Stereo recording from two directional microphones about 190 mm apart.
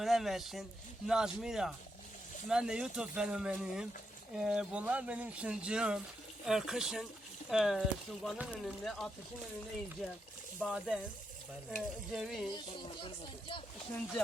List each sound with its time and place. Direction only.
0.0 s speech: centre (ahead or behind)
10.7 s speech: 5° right (ahead or behind)
12.5 s speech: 25° left (ahead or behind)